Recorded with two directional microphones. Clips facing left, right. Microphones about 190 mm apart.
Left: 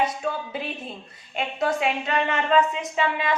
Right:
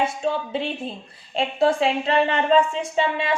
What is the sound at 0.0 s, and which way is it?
A woman's voice, 25° right (ahead or behind).